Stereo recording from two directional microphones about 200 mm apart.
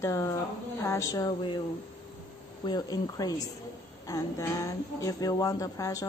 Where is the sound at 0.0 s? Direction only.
15° left (ahead or behind).